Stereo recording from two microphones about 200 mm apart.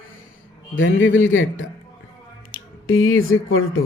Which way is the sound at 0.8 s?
70° left (ahead or behind).